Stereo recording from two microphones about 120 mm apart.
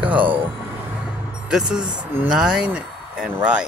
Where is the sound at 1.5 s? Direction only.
5° right (ahead or behind).